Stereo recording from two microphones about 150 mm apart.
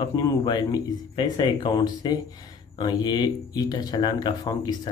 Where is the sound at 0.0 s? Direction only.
30° left (ahead or behind).